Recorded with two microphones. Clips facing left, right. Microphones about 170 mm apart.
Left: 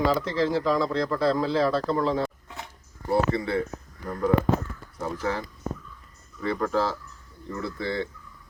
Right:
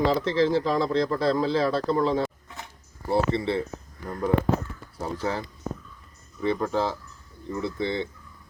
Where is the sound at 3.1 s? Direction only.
30° right (ahead or behind).